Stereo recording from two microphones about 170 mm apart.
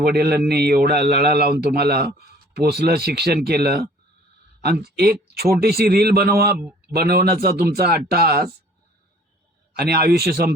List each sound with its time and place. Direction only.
0.0 s a man's voice: 65° right (ahead or behind)
4.9 s a man's voice: 70° right (ahead or behind)
6.6 s a sound: 10° right (ahead or behind)
6.9 s speech: 65° right (ahead or behind)
9.7 s speech: 70° right (ahead or behind)